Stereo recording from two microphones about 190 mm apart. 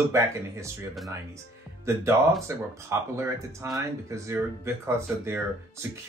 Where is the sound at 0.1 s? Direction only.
15° right (ahead or behind).